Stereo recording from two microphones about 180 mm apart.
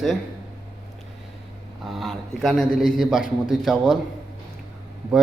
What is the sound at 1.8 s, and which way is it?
A man's voice, centre (ahead or behind).